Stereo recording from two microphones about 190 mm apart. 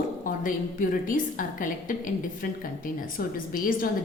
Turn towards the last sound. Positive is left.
turn(degrees=45)  # may be behind; listen again after turning